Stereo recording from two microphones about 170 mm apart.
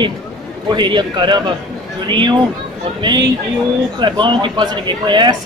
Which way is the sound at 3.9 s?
30° right (ahead or behind).